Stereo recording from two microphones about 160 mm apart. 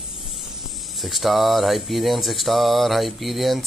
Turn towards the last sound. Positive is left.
turn(degrees=0)  # may be behind; listen again after turning